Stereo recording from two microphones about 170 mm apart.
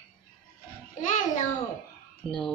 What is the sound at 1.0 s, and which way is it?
Speech, 45° left (ahead or behind).